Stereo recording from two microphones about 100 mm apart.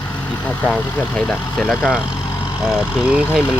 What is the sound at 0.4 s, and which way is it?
Speech, 15° left (ahead or behind).